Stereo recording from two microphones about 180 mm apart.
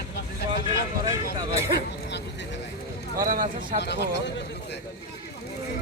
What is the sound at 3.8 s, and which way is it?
Speech, 70° left (ahead or behind).